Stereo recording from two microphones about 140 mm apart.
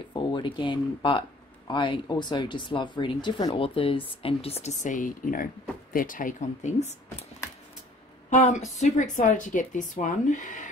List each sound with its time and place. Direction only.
0.1 s speech: 35° left (ahead or behind); by 7.2 s 50° left (ahead or behind)
8.3 s speech: 55° left (ahead or behind)